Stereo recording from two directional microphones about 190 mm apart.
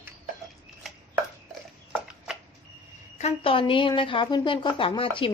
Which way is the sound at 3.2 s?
30° left (ahead or behind).